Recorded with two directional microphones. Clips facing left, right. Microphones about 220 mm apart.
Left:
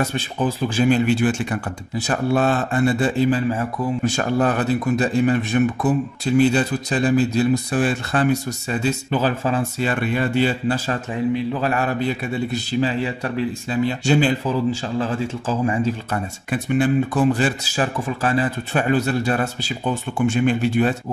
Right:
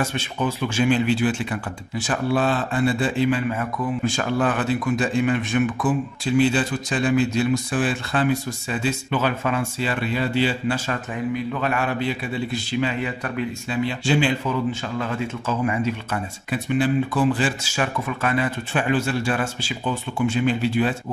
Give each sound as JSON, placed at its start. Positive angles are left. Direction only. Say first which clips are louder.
{"t": 0.0, "sound": "speech", "louder": "left 2 dB", "side_deg": 35}
{"t": 9.8, "sound": "speech", "louder": "left 3 dB", "side_deg": 50}
{"t": 10.9, "sound": "speech", "louder": "left 4 dB", "side_deg": 35}
{"t": 13.8, "sound": "speech", "louder": "left 3 dB", "side_deg": 45}
{"t": 16.4, "sound": "speech", "louder": "left 2 dB", "side_deg": 45}